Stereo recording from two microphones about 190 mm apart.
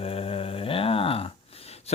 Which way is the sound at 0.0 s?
30° left (ahead or behind).